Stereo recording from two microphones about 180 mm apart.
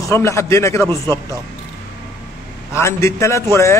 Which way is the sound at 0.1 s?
15° left (ahead or behind).